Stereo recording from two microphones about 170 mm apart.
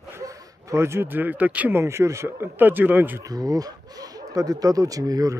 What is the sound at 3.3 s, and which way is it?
Speech, 20° right (ahead or behind).